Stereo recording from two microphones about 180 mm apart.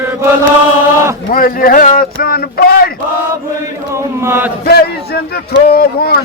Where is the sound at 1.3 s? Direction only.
55° left (ahead or behind).